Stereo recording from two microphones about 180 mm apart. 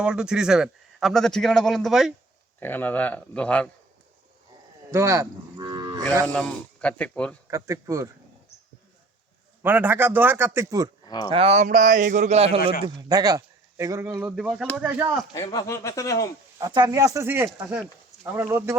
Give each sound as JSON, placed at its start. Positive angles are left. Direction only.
{"t": 0.0, "sound": "a man's voice", "side_deg": -5}
{"t": 2.6, "sound": "speech", "side_deg": 10}
{"t": 4.9, "sound": "cattle", "side_deg": -15}
{"t": 6.2, "sound": "speech", "side_deg": 10}
{"t": 7.5, "sound": "speech", "side_deg": -15}
{"t": 9.6, "sound": "speech", "side_deg": -10}
{"t": 11.0, "sound": "a sound", "side_deg": 25}
{"t": 11.3, "sound": "a man's voice", "side_deg": -35}
{"t": 15.3, "sound": "speech", "side_deg": 20}
{"t": 16.6, "sound": "speech", "side_deg": -20}